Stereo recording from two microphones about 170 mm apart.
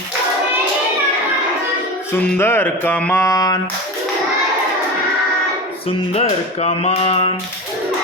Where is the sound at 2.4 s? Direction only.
15° left (ahead or behind).